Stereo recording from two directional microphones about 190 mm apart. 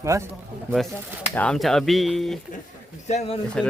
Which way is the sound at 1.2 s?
10° left (ahead or behind).